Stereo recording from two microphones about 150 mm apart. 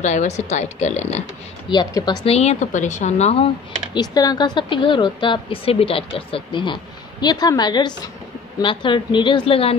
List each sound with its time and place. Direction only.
0.0 s a woman's voice: 50° left (ahead or behind)
1.7 s a woman's voice: 30° left (ahead or behind)
2.2 s a woman's voice: 45° left (ahead or behind)
3.9 s a woman's voice: 25° left (ahead or behind)